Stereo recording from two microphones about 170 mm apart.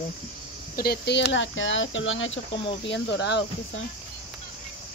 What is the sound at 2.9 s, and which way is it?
Speech, 90° left.